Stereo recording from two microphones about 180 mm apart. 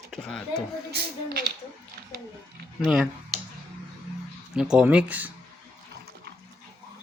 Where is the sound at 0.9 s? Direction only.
60° right (ahead or behind).